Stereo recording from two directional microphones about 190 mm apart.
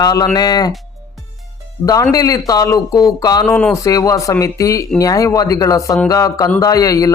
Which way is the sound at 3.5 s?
5° left (ahead or behind).